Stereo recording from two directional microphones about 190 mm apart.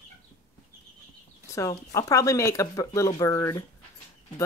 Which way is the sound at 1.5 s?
15° left (ahead or behind).